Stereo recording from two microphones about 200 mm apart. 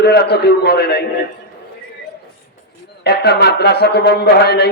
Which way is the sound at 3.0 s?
55° left (ahead or behind).